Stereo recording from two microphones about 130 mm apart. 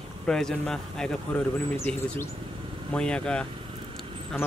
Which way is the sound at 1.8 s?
20° left (ahead or behind).